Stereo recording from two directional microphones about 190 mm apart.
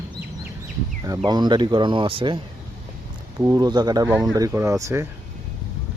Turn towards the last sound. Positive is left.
turn(degrees=-15)  # may be behind; listen again after turning